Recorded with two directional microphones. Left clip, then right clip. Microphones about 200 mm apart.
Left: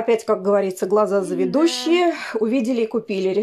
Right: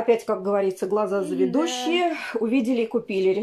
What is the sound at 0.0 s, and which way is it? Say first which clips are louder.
Speech: left 3 dB; 45° left (ahead or behind).